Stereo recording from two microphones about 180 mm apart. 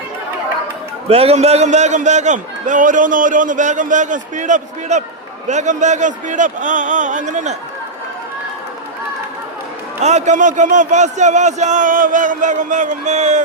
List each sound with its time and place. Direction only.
1.0 s a man's voice: 35° right (ahead or behind)
10.0 s a man's voice: 40° right (ahead or behind)